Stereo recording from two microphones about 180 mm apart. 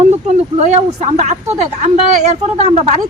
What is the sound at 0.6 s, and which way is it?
A woman's voice, 40° right (ahead or behind).